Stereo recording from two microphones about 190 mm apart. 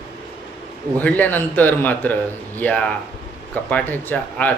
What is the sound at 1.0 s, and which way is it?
A man's voice, 10° left (ahead or behind).